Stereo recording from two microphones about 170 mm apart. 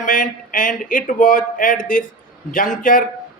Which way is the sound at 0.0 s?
50° left (ahead or behind).